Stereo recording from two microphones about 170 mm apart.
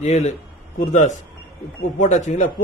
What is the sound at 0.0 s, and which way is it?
Speech, 40° left (ahead or behind).